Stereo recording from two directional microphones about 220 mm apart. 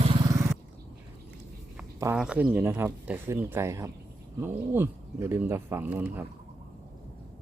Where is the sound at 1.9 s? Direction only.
10° right (ahead or behind).